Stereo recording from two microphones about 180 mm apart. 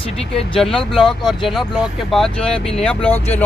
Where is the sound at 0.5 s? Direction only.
Centre (ahead or behind).